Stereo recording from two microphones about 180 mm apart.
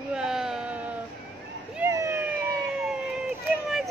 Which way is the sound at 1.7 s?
15° right (ahead or behind).